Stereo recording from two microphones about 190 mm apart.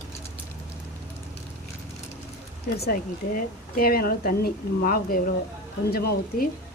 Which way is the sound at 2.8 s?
50° left (ahead or behind).